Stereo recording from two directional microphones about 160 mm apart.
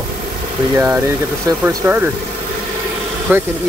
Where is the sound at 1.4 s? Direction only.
15° right (ahead or behind).